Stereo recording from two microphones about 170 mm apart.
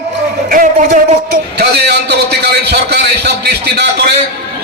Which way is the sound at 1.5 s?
75° right (ahead or behind).